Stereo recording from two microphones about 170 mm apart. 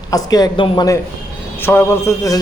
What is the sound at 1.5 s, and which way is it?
Speech, 15° left (ahead or behind).